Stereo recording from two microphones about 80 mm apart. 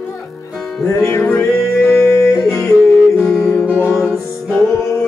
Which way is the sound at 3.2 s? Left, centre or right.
Centre.